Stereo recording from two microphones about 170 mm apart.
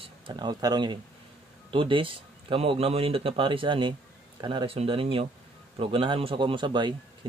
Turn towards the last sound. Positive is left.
turn(degrees=-25)  # may be behind; listen again after turning